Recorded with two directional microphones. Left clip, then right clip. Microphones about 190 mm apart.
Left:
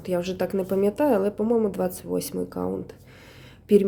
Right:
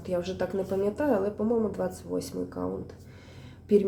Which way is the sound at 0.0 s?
45° left (ahead or behind).